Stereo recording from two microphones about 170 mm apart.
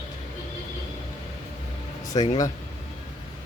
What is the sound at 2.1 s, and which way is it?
Speech, 20° left (ahead or behind).